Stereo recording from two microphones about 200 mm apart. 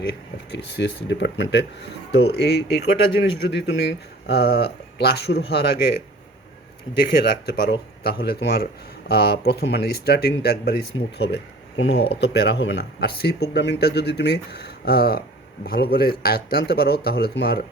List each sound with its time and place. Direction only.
0.0 s speech: 55° left (ahead or behind)
6.9 s speech: 55° left (ahead or behind)